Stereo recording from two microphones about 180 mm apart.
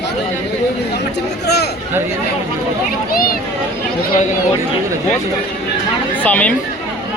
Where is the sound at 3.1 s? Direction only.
55° left (ahead or behind).